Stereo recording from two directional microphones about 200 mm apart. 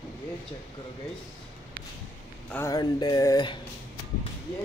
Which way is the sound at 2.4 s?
10° left (ahead or behind).